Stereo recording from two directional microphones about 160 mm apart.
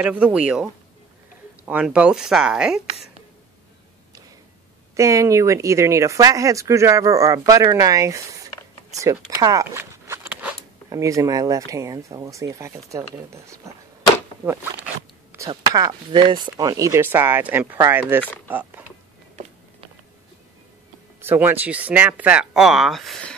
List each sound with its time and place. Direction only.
0.0 s speech: 10° right (ahead or behind)
1.7 s speech: 10° right (ahead or behind)
4.9 s speech: 20° right (ahead or behind)
21.2 s speech: 15° right (ahead or behind); by 23.3 s centre (ahead or behind)